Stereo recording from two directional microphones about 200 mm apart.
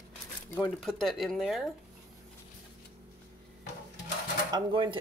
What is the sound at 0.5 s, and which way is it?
A woman's voice, 5° left (ahead or behind).